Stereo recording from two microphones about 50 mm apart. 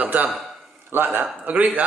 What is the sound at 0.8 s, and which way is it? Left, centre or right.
Speech, right.